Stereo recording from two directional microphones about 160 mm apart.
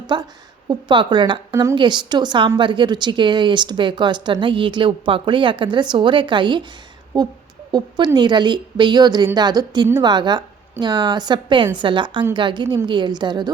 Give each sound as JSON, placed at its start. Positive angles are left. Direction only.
{"t": 0.1, "sound": "speech", "side_deg": -30}